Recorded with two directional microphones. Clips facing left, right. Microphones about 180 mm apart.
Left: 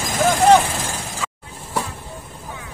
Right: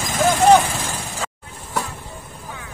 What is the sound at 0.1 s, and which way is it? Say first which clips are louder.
Vehicle: even; centre (ahead or behind).